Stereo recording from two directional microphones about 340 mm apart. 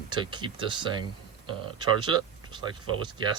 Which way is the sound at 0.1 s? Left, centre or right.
Centre.